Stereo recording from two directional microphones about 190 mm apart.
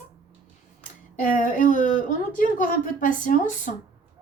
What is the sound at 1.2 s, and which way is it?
Speech, 45° left (ahead or behind).